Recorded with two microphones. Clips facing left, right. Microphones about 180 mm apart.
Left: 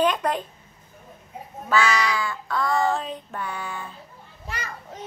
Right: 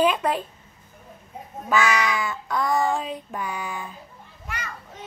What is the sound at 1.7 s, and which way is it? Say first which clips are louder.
Child singing: even; 15° right (ahead or behind).